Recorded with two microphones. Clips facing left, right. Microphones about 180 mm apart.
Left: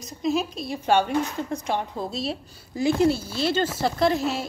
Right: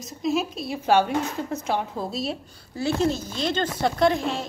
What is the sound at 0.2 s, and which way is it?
A woman's voice, centre (ahead or behind).